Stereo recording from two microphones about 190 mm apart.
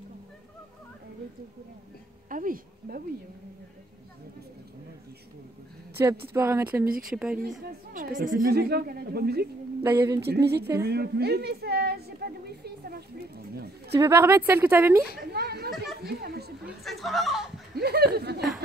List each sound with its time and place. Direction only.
2.2 s a woman's voice: 45° right (ahead or behind)
6.0 s a woman's voice: 20° right (ahead or behind)
6.9 s speech: 50° right (ahead or behind)
7.2 s speech: centre (ahead or behind)
7.9 s a woman's voice: 45° right (ahead or behind)
9.8 s a woman's voice: 15° right (ahead or behind)
10.2 s a woman's voice: 60° right (ahead or behind)
10.8 s a sound: 55° right (ahead or behind)
13.9 s a woman's voice: 15° right (ahead or behind)
15.3 s children playing: 55° right (ahead or behind)
16.0 s a sound: 55° right (ahead or behind)
16.6 s speech: centre (ahead or behind)
17.7 s a woman's voice: 55° right (ahead or behind)